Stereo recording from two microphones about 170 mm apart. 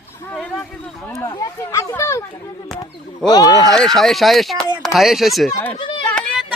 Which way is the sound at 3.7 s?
Centre (ahead or behind).